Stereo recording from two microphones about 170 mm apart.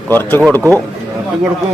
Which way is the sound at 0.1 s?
10° left (ahead or behind).